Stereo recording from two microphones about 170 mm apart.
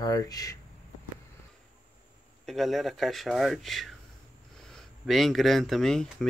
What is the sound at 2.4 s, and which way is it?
Speech, centre (ahead or behind).